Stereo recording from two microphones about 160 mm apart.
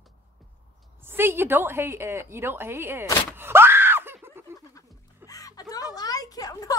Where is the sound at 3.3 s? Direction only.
15° right (ahead or behind).